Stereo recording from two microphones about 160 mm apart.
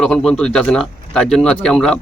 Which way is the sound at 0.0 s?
5° left (ahead or behind).